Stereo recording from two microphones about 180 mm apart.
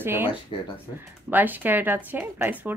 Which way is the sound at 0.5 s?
25° left (ahead or behind).